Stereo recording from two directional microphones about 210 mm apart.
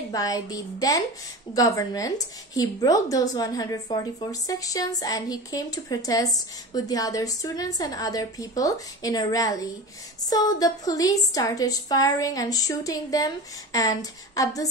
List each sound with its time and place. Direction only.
0.1 s a woman's voice: 15° left (ahead or behind)